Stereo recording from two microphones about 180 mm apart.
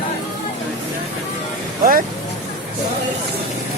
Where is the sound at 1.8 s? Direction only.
50° right (ahead or behind).